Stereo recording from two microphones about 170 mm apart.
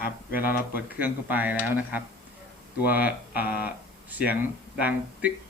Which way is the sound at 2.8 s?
60° left (ahead or behind).